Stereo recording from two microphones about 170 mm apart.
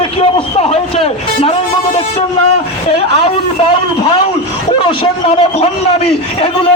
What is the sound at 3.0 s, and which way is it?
Speech, 35° left (ahead or behind).